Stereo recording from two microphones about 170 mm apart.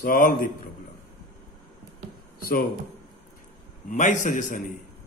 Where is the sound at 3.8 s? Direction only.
45° left (ahead or behind).